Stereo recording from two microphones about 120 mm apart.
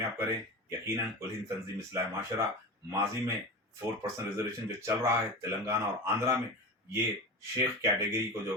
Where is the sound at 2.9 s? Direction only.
25° right (ahead or behind).